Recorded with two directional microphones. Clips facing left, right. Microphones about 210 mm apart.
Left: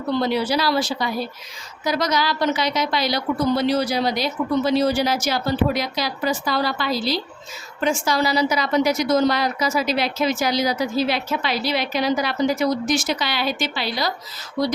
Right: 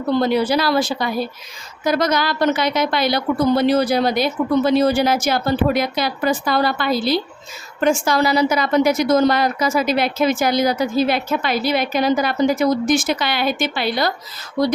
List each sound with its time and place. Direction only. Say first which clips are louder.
0.1 s a woman's voice: right 4 dB; 50° right (ahead or behind)